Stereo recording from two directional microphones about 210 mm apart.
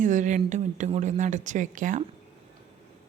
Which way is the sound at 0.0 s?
35° right (ahead or behind).